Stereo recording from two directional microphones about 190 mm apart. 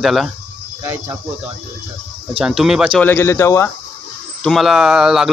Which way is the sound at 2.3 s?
5° right (ahead or behind).